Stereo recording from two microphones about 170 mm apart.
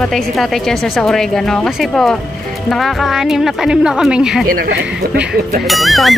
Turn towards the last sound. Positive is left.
turn(degrees=0)  # may be behind; listen again after turning